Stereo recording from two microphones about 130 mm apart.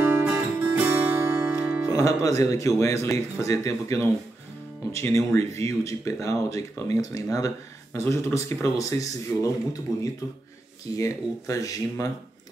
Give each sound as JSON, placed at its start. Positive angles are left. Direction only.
{"t": 0.0, "sound": "music", "side_deg": -20}
{"t": 1.9, "sound": "speech", "side_deg": 25}
{"t": 9.9, "sound": "speech", "side_deg": 0}
{"t": 11.0, "sound": "speech", "side_deg": 25}